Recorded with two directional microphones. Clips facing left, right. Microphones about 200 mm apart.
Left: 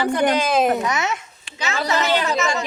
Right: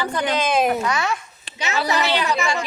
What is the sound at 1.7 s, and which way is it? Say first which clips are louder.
Speech: even; 15° right (ahead or behind).